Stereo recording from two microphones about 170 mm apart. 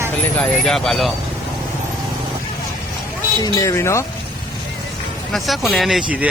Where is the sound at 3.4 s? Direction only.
20° left (ahead or behind).